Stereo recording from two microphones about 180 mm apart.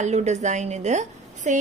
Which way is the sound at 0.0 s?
40° right (ahead or behind).